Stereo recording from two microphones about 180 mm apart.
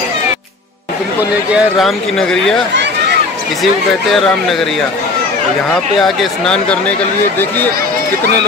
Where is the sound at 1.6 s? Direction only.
Centre (ahead or behind).